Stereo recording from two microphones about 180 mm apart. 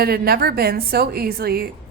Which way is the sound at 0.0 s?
60° right (ahead or behind).